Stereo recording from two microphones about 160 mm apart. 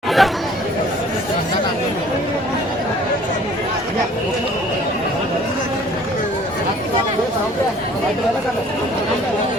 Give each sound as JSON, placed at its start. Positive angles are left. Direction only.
{"t": 0.2, "sound": "chatter", "side_deg": 0}